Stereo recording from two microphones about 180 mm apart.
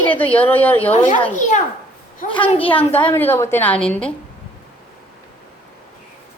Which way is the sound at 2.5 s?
30° left (ahead or behind).